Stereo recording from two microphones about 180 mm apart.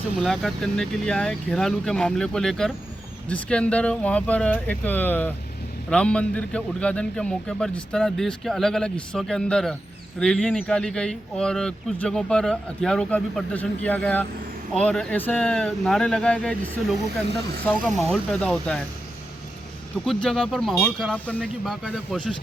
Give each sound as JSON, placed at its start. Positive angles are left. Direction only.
{"t": 0.2, "sound": "speech", "side_deg": 0}
{"t": 20.1, "sound": "speech", "side_deg": 5}